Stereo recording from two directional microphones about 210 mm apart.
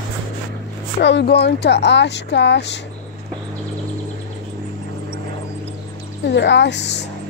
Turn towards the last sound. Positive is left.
turn(degrees=55)  # may be behind; listen again after turning